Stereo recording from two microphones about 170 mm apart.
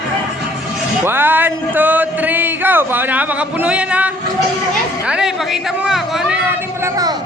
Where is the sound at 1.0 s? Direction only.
10° right (ahead or behind).